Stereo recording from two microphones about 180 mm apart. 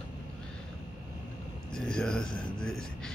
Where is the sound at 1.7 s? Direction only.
5° left (ahead or behind).